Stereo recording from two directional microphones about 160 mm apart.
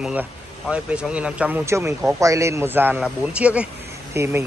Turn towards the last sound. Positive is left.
turn(degrees=-15)  # may be behind; listen again after turning